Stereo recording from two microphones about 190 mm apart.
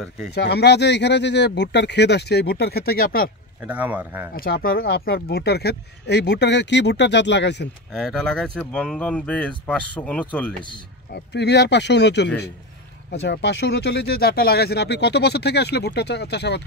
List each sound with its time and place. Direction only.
0.3 s speech: 60° left (ahead or behind)
3.6 s a man's voice: 10° right (ahead or behind)
4.4 s speech: 55° left (ahead or behind)
7.9 s speech: 5° left (ahead or behind)
11.1 s speech: 60° left (ahead or behind)